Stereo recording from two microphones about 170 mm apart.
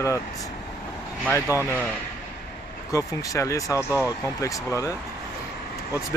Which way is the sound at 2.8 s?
20° left (ahead or behind).